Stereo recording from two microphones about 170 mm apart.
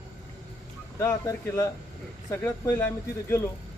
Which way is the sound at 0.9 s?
20° left (ahead or behind).